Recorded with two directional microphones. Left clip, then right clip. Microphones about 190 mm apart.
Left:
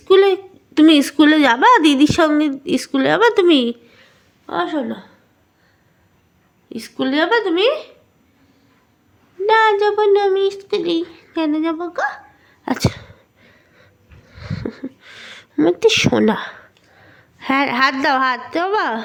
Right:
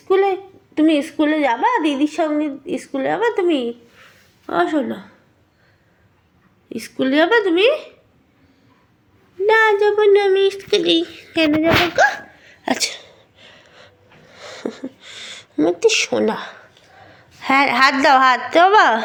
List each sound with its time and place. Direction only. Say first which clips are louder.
0.1 s a woman's voice: left 4 dB; 45° left (ahead or behind)
4.4 s a woman's voice: right 2 dB; 10° right (ahead or behind)
6.7 s speech: right 1 dB; centre (ahead or behind)
9.5 s speech: even; 5° left (ahead or behind); by 13.1 s 35° left (ahead or behind)
13.4 s wheeze: right 6 dB; 20° left (ahead or behind)